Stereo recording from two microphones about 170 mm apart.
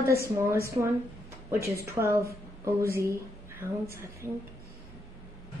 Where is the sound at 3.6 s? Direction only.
15° right (ahead or behind).